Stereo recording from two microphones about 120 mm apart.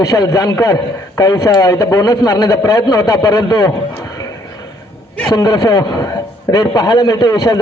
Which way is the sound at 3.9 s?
30° left (ahead or behind).